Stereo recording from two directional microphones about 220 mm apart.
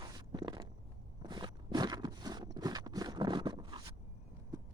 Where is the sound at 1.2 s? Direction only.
20° right (ahead or behind).